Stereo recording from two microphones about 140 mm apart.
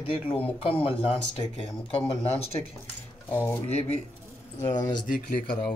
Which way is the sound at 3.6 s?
50° left (ahead or behind).